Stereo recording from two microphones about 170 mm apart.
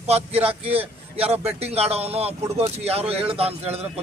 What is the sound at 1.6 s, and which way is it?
A man's voice, 35° right (ahead or behind).